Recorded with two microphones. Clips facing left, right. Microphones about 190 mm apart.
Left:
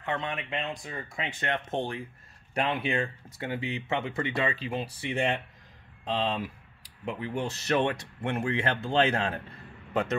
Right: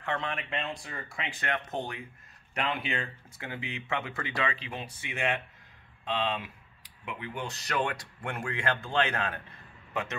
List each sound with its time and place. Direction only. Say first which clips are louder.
0.0 s speech: left 1 dB; 20° left (ahead or behind)